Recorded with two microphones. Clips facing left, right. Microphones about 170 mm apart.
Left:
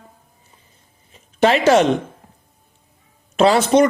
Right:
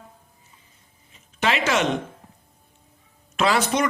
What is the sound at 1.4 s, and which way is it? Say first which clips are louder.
Speech: left 9 dB; 35° left (ahead or behind).